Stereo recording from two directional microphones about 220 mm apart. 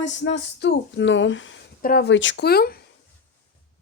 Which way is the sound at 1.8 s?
40° left (ahead or behind).